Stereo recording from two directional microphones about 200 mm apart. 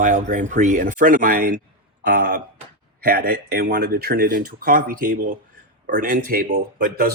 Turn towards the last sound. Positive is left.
turn(degrees=-50)  # may be behind; listen again after turning